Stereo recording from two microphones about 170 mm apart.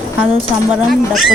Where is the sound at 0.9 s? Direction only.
Centre (ahead or behind).